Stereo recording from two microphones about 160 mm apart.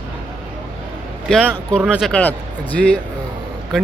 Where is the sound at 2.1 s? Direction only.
10° left (ahead or behind).